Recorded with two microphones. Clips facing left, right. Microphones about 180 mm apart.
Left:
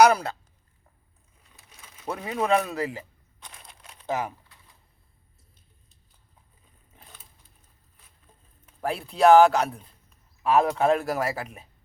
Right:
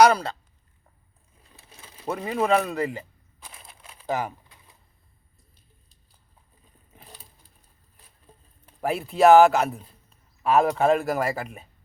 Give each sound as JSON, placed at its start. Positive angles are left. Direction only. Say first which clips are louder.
{"t": 0.0, "sound": "speech", "louder": "right 1 dB", "side_deg": 10}
{"t": 1.5, "sound": "mechanisms", "louder": "right 4 dB", "side_deg": -30}
{"t": 2.0, "sound": "speech", "louder": "right 2 dB", "side_deg": 0}
{"t": 3.4, "sound": "crumpling", "louder": "right 1 dB", "side_deg": -5}
{"t": 8.8, "sound": "speech", "louder": "right 2 dB", "side_deg": -5}